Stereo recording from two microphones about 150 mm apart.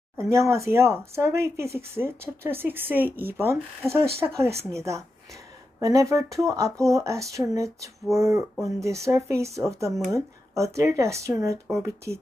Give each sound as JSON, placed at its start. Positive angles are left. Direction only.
{"t": 0.2, "sound": "speech", "side_deg": -20}
{"t": 4.0, "sound": "speech", "side_deg": -90}
{"t": 4.7, "sound": "speech", "side_deg": -20}